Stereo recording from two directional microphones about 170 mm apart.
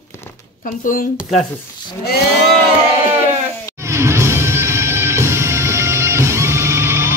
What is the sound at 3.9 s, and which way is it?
Music, 15° right (ahead or behind).